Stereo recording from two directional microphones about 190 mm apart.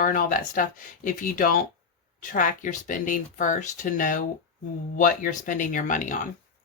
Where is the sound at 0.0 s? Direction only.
45° left (ahead or behind).